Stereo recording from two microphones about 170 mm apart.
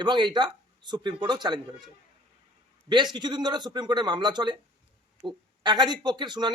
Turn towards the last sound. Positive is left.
turn(degrees=-25)  # may be behind; listen again after turning